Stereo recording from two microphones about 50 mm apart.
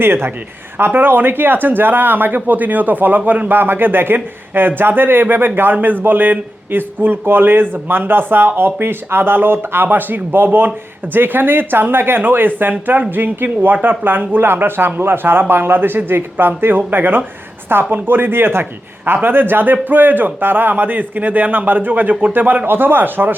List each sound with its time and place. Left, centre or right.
0.0 s speech: right